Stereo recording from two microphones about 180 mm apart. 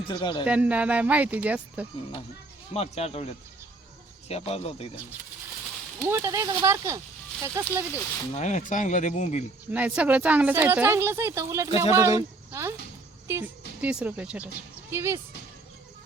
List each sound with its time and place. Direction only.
0.1 s a man's voice: 25° left (ahead or behind)
0.4 s a woman's voice: 5° right (ahead or behind)
2.7 s speech: 35° left (ahead or behind)
6.1 s a woman's voice: 15° right (ahead or behind)
8.3 s speech: 40° left (ahead or behind)
9.7 s a woman's voice: 5° right (ahead or behind)